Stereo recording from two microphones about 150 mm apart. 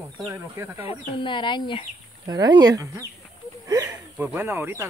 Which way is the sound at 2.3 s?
25° right (ahead or behind).